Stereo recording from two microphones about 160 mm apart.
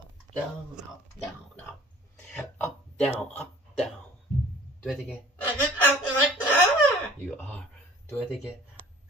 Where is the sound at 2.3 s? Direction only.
10° left (ahead or behind).